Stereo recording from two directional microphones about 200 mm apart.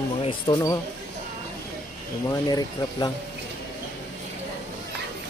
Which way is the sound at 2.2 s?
20° left (ahead or behind).